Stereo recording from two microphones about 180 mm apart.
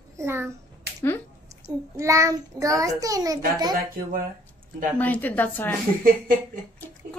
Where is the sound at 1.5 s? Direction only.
15° right (ahead or behind).